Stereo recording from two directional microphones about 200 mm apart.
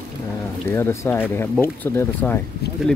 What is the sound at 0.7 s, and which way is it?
Speech, 10° left (ahead or behind).